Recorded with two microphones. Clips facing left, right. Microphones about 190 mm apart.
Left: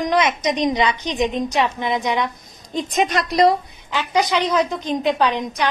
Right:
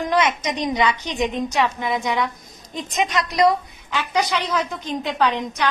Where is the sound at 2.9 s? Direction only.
30° left (ahead or behind).